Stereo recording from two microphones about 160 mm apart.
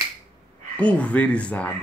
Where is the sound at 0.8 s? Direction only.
10° left (ahead or behind).